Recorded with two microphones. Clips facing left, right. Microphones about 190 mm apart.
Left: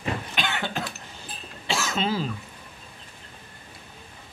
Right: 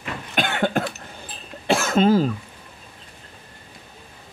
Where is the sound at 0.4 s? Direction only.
50° right (ahead or behind).